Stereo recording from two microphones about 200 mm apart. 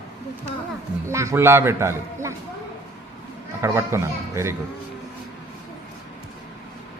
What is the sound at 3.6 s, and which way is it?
Speech, 15° right (ahead or behind).